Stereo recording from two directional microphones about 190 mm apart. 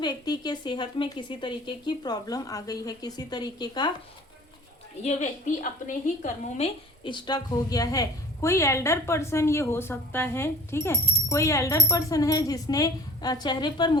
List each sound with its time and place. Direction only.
0.0 s speech: 20° left (ahead or behind)
5.0 s a woman's voice: 40° left (ahead or behind)
7.0 s a woman's voice: 25° left (ahead or behind)